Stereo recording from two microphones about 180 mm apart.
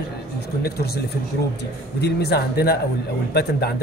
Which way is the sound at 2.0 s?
65° left (ahead or behind).